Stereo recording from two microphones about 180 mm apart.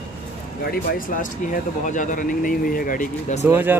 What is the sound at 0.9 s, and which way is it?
Speech, 50° left (ahead or behind).